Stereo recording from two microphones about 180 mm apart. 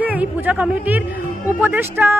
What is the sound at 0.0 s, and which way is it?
Speech, 10° right (ahead or behind).